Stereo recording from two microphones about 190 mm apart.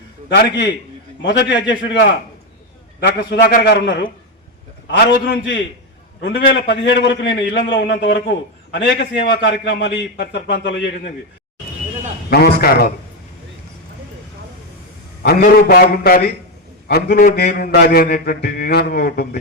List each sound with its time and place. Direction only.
0.3 s a man's voice: 60° left (ahead or behind)
1.2 s a man's voice: 70° left (ahead or behind)
3.0 s a man's voice: 55° left (ahead or behind)
12.3 s a man's voice: 55° left (ahead or behind)
15.2 s a man's voice: 55° left (ahead or behind)